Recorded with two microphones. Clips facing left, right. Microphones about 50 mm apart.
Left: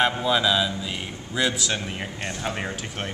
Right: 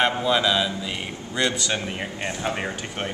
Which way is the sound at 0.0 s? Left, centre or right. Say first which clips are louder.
Right 1 dB; centre.